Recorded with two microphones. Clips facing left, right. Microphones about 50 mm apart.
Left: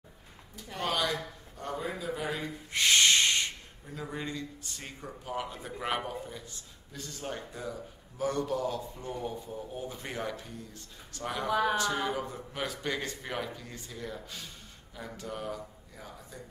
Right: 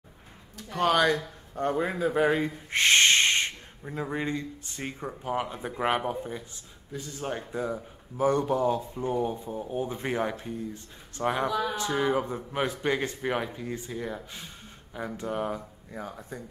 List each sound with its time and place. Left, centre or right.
0.7 s a man's voice: right
11.5 s speech: left
11.8 s a man's voice: right